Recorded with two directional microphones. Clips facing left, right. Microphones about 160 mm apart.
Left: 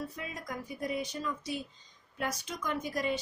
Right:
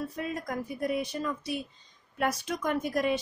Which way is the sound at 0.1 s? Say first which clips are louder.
Right 7 dB; 50° right (ahead or behind).